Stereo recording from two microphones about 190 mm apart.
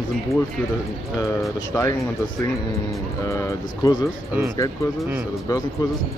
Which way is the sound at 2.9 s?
15° left (ahead or behind).